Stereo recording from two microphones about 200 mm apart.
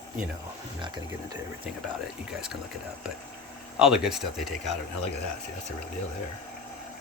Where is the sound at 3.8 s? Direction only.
5° right (ahead or behind).